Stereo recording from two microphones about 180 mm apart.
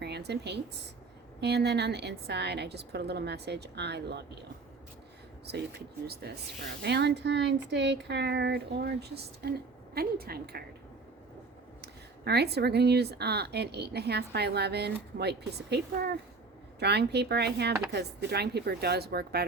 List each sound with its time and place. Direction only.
0.0 s a woman's voice: 65° right (ahead or behind)
6.1 s speech: 65° right (ahead or behind)
11.8 s speech: 65° right (ahead or behind)